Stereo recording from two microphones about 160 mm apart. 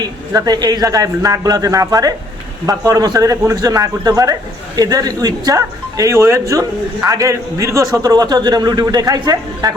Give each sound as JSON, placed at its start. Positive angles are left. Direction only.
{"t": 0.0, "sound": "speech", "side_deg": -25}